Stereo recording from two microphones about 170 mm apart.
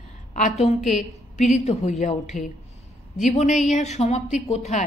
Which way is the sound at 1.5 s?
40° left (ahead or behind).